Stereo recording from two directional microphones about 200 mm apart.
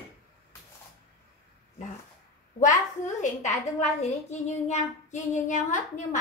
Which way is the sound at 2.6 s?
35° left (ahead or behind).